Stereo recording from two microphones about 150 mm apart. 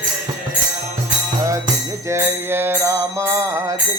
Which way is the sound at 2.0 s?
15° right (ahead or behind).